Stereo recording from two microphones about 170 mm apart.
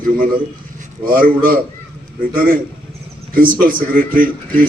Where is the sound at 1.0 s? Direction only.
55° right (ahead or behind).